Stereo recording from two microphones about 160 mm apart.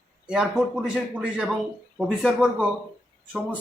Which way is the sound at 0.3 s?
5° right (ahead or behind).